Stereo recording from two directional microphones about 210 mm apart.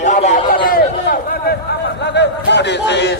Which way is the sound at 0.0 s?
35° left (ahead or behind).